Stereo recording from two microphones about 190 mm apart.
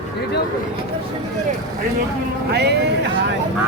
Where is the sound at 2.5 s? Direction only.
60° right (ahead or behind).